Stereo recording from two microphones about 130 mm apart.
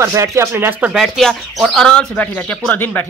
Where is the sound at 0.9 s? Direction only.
Centre (ahead or behind).